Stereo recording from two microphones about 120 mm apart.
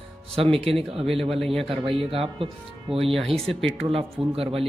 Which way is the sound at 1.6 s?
50° right (ahead or behind).